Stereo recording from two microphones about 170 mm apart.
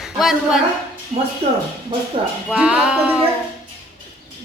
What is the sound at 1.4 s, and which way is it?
Speech, 35° right (ahead or behind).